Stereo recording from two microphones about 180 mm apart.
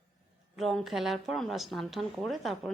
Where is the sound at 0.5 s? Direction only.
Centre (ahead or behind).